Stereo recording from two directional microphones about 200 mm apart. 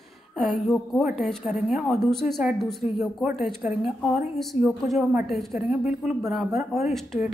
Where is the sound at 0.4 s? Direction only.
Centre (ahead or behind).